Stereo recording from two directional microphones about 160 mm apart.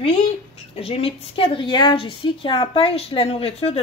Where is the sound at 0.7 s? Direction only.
40° left (ahead or behind).